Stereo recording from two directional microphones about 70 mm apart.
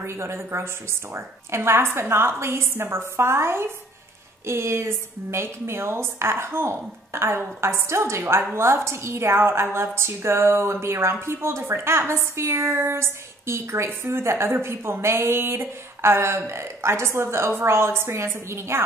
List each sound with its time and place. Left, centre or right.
0.0 s a woman's voice: right